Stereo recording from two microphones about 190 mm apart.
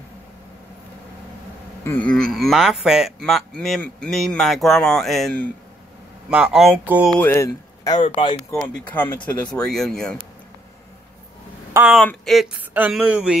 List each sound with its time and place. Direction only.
1.9 s speech: 5° left (ahead or behind)
7.2 s speech: 15° left (ahead or behind)
8.7 s speech: 10° left (ahead or behind)
11.7 s speech: 10° right (ahead or behind)
12.0 s speech: 5° left (ahead or behind)